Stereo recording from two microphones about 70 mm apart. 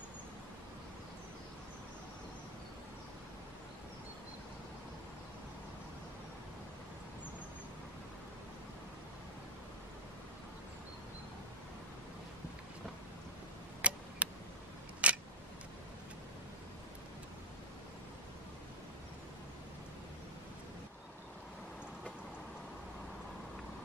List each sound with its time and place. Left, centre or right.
13.7 s tick: centre
15.0 s camera: centre